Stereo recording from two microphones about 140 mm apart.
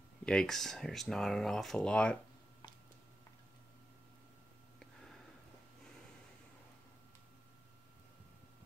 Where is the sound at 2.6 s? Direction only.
30° left (ahead or behind).